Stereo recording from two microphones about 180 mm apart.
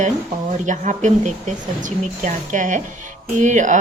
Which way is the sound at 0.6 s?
45° right (ahead or behind).